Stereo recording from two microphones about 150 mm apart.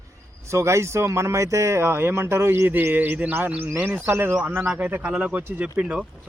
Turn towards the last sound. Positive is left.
turn(degrees=-5)  # may be behind; listen again after turning